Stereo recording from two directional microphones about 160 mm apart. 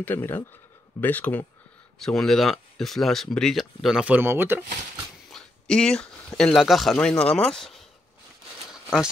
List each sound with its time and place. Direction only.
0.0 s speech: 15° left (ahead or behind); by 4.6 s 15° right (ahead or behind)
5.3 s speech: 5° left (ahead or behind)
8.7 s a sound: 5° right (ahead or behind)